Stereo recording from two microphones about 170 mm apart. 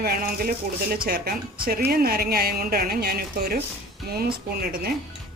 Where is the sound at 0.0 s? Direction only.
65° right (ahead or behind).